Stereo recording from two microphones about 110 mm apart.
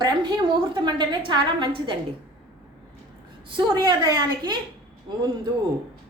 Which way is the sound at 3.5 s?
40° right (ahead or behind).